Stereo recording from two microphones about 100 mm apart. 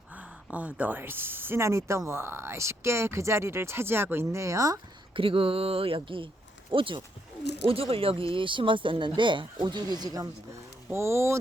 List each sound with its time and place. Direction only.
0.1 s speech: 15° right (ahead or behind); by 4.8 s 35° right (ahead or behind)
5.1 s speech: 65° right (ahead or behind)
7.7 s speech: 70° right (ahead or behind); by 10.2 s 40° right (ahead or behind)
10.8 s speech: 25° right (ahead or behind)